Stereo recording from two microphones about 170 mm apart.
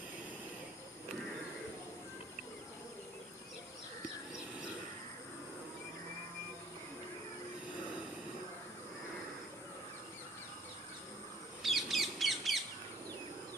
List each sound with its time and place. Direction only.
11.6 s bird: centre (ahead or behind)